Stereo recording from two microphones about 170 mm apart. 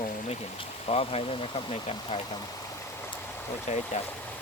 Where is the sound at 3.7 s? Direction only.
40° left (ahead or behind).